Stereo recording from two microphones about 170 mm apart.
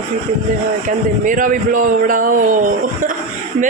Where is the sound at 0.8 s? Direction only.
50° right (ahead or behind).